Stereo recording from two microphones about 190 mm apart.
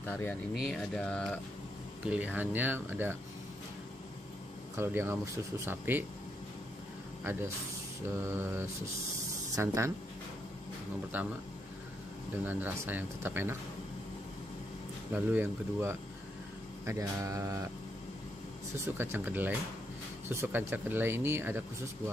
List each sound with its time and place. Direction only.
0.1 s speech: 10° left (ahead or behind)
2.0 s speech: 5° right (ahead or behind)
4.7 s speech: 10° right (ahead or behind)
7.2 s speech: 10° right (ahead or behind)
11.1 s speech: 10° right (ahead or behind)
12.4 s speech: 10° right (ahead or behind)
15.1 s speech: 10° right (ahead or behind)
18.9 s speech: 10° right (ahead or behind)